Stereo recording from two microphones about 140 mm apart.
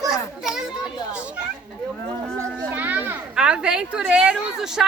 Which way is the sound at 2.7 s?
10° right (ahead or behind).